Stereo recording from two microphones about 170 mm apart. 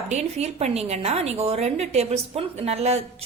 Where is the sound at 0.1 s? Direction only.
40° right (ahead or behind).